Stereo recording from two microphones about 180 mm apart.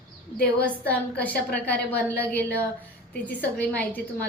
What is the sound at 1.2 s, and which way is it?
Speech, 10° left (ahead or behind).